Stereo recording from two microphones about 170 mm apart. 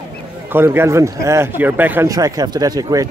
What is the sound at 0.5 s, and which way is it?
Speech, 15° right (ahead or behind).